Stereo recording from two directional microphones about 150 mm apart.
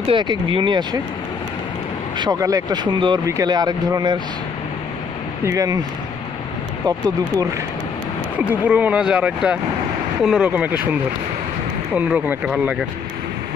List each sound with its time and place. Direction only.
0.1 s speech: 35° right (ahead or behind)
2.1 s speech: 25° right (ahead or behind)
5.4 s speech: 20° right (ahead or behind)
8.4 s speech: 10° right (ahead or behind)
11.9 s speech: 10° right (ahead or behind)